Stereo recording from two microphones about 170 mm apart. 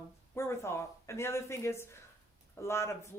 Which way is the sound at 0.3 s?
15° left (ahead or behind).